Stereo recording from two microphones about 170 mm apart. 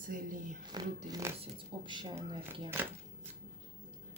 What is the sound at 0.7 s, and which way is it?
Speech, 25° right (ahead or behind).